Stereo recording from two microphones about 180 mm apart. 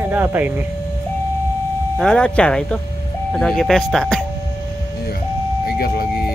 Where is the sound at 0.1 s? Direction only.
10° right (ahead or behind).